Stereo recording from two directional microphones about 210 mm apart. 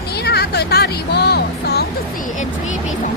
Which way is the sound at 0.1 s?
50° left (ahead or behind).